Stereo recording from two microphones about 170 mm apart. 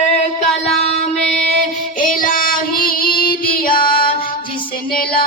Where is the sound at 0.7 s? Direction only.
35° left (ahead or behind).